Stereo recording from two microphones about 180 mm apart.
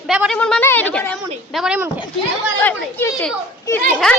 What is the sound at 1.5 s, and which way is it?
Speech, 5° right (ahead or behind).